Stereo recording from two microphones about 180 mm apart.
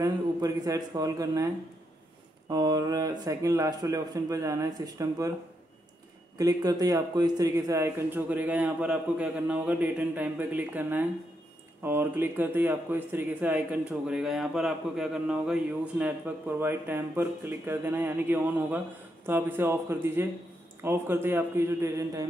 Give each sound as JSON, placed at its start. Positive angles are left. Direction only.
{"t": 0.0, "sound": "a man's voice", "side_deg": -20}
{"t": 2.5, "sound": "a man's voice", "side_deg": -20}
{"t": 6.3, "sound": "speech", "side_deg": -20}